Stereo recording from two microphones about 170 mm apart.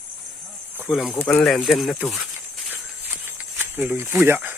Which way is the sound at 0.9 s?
Centre (ahead or behind).